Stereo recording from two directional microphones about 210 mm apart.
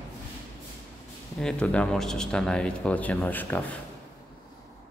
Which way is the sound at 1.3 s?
5° left (ahead or behind).